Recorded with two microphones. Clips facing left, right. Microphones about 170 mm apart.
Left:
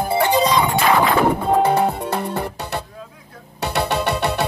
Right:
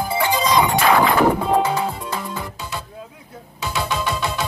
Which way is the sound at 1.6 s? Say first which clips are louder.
Left 4 dB; 60° left (ahead or behind).